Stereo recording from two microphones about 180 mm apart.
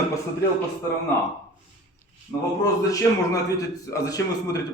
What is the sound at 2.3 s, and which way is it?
A man's voice, 20° left (ahead or behind).